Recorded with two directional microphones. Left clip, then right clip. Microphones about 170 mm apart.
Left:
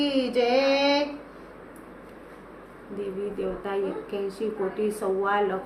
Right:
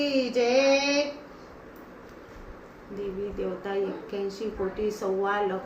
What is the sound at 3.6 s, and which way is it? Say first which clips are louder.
A woman's voice: left 1 dB; 15° left (ahead or behind).